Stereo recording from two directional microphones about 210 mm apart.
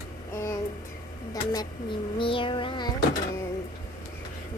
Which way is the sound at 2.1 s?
25° left (ahead or behind).